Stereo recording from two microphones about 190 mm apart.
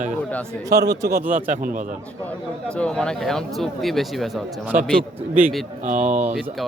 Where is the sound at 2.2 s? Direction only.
5° left (ahead or behind).